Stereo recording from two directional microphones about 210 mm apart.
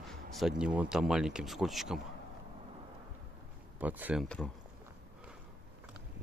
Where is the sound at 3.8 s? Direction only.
10° right (ahead or behind).